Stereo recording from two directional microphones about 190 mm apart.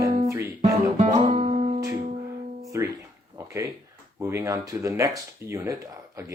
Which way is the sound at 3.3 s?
15° right (ahead or behind).